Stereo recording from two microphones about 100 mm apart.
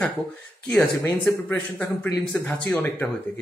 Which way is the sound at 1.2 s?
10° left (ahead or behind).